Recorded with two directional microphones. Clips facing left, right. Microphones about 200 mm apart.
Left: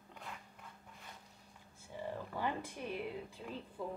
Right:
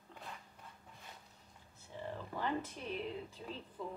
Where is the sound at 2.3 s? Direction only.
10° left (ahead or behind).